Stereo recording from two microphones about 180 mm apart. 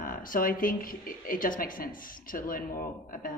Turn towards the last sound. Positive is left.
turn(degrees=50)  # may be behind; listen again after turning